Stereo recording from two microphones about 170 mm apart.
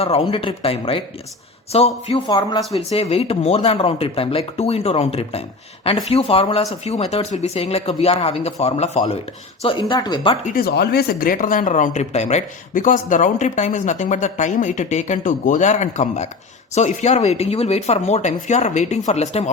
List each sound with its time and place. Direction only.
0.0 s speech: 35° left (ahead or behind)
2.2 s speech: 25° left (ahead or behind)
2.7 s speech: 35° left (ahead or behind)
9.6 s speech: 25° left (ahead or behind)
10.4 s speech: 60° left (ahead or behind); by 19.5 s 40° left (ahead or behind)